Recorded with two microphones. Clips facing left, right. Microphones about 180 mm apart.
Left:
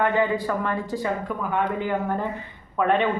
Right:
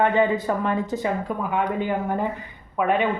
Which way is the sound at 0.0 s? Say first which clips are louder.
Right 2 dB; 20° right (ahead or behind).